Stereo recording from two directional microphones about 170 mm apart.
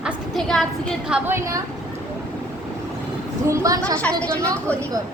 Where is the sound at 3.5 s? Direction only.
20° right (ahead or behind).